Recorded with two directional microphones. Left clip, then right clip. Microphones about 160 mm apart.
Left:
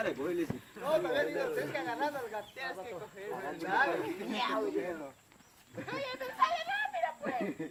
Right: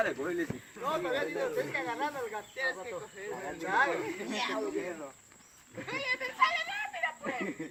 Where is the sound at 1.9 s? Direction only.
35° left (ahead or behind).